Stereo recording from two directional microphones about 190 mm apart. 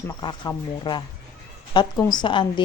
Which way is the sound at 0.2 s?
25° left (ahead or behind).